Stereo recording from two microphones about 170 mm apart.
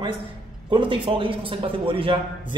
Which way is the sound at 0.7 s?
30° right (ahead or behind).